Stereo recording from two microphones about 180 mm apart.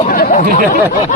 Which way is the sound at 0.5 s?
40° left (ahead or behind).